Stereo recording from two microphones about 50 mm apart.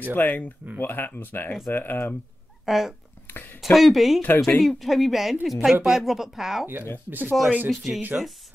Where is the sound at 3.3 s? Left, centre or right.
Left.